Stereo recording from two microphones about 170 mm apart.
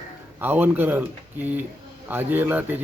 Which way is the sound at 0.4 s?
10° right (ahead or behind).